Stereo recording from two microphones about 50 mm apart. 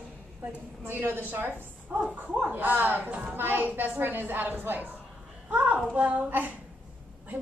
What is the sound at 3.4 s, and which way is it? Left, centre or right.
A woman's voice, right.